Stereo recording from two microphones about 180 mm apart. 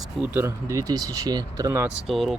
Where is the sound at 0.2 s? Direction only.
15° right (ahead or behind).